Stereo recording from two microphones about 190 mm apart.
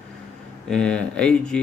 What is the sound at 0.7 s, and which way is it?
Speech, 5° left (ahead or behind).